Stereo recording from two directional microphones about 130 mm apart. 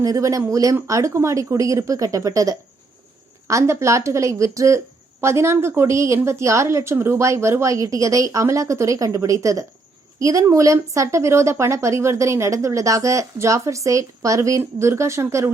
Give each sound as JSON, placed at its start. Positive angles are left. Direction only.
{"t": 0.0, "sound": "a woman's voice", "side_deg": -25}